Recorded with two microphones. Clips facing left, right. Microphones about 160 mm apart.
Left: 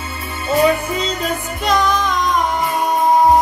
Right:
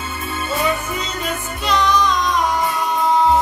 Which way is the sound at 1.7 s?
50° left (ahead or behind).